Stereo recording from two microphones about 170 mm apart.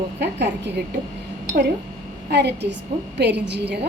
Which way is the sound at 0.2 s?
90° right.